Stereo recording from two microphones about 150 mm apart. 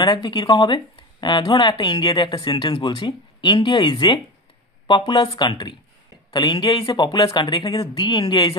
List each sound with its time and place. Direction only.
0.0 s speech: 30° left (ahead or behind)